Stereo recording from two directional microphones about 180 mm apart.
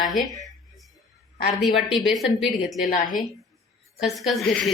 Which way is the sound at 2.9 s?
50° left (ahead or behind).